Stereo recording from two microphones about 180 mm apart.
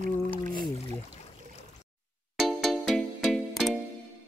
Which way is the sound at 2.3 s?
Centre (ahead or behind).